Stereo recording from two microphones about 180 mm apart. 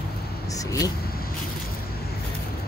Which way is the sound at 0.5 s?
20° left (ahead or behind).